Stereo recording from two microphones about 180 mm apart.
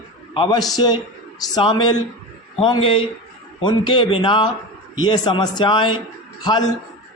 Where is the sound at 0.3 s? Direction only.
30° left (ahead or behind).